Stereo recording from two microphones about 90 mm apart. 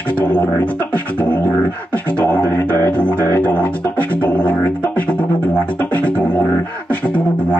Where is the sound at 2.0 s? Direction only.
20° left (ahead or behind).